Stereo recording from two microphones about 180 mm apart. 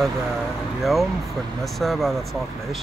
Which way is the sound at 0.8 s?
Centre (ahead or behind).